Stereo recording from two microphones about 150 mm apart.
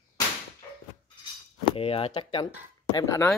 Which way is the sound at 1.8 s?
40° left (ahead or behind).